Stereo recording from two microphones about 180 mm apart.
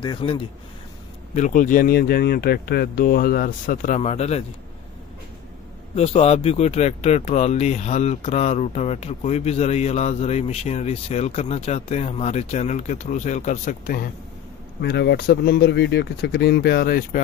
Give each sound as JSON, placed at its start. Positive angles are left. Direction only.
{"t": 0.0, "sound": "speech", "side_deg": 25}
{"t": 1.3, "sound": "speech", "side_deg": 45}
{"t": 5.9, "sound": "speech", "side_deg": 35}
{"t": 14.8, "sound": "speech", "side_deg": 65}